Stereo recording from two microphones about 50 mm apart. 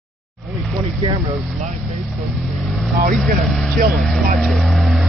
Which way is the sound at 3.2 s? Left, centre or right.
Centre.